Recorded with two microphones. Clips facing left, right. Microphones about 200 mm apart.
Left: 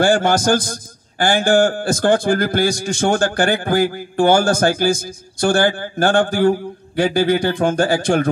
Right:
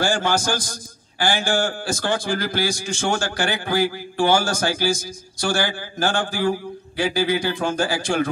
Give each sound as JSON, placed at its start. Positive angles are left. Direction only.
{"t": 0.0, "sound": "a man's voice", "side_deg": 55}